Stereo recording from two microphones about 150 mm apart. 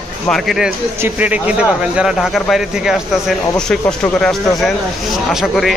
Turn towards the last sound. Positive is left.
turn(degrees=0)  # may be behind; listen again after turning